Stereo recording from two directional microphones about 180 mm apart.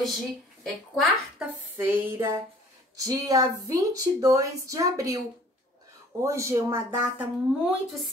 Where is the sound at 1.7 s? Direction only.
10° right (ahead or behind).